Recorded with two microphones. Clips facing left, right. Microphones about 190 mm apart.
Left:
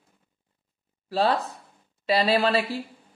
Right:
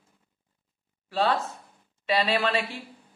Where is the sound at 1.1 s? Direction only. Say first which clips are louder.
Left 2 dB; 35° left (ahead or behind).